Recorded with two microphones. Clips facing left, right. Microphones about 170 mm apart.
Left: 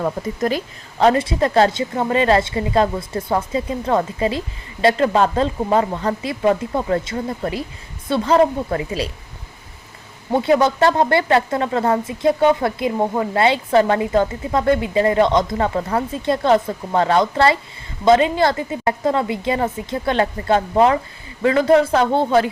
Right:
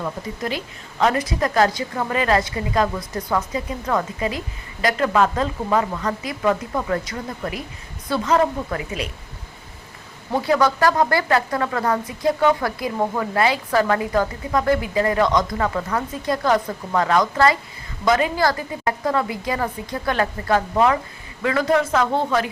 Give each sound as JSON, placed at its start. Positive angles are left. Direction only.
{"t": 0.0, "sound": "a woman's voice", "side_deg": 45}
{"t": 10.3, "sound": "a woman's voice", "side_deg": 25}